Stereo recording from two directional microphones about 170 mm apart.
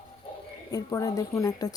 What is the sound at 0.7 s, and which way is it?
A woman's voice, 20° left (ahead or behind).